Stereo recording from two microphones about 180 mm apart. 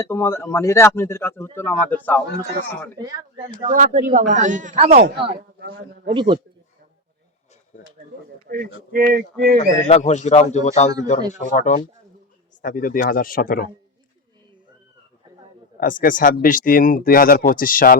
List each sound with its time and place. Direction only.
0.0 s speech: 15° left (ahead or behind)
3.7 s a man's voice: 50° right (ahead or behind)
5.1 s speech: 30° right (ahead or behind)
5.5 s a man's voice: 55° right (ahead or behind)
6.1 s speech: 25° right (ahead or behind)
8.4 s a man's voice: 50° right (ahead or behind)
9.6 s speech: 40° left (ahead or behind)
15.8 s speech: 50° left (ahead or behind)